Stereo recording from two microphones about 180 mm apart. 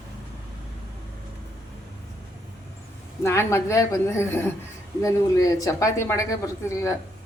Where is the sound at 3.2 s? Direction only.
15° left (ahead or behind).